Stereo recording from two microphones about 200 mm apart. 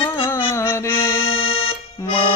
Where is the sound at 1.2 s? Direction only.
25° left (ahead or behind).